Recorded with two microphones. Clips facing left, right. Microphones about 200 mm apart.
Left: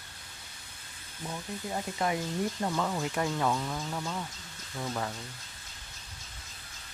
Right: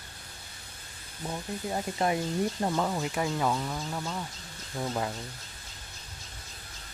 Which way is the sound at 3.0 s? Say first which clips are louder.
Right 1 dB; 5° right (ahead or behind).